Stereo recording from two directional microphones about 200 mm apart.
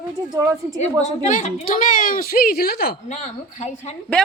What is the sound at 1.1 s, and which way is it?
A woman's voice, 35° left (ahead or behind).